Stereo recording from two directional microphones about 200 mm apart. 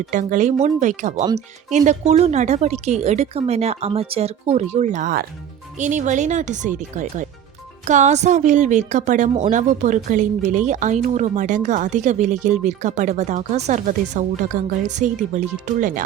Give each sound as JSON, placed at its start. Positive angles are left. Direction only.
{"t": 0.1, "sound": "speech", "side_deg": -40}